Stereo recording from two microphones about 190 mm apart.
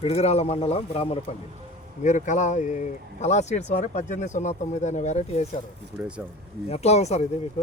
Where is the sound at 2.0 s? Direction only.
40° left (ahead or behind).